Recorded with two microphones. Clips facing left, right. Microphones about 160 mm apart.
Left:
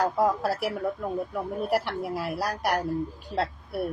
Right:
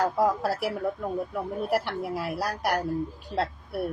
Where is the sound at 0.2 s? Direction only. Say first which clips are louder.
Even; centre (ahead or behind).